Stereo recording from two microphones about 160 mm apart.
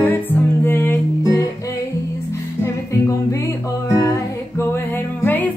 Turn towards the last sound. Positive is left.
turn(degrees=10)  # may be behind; listen again after turning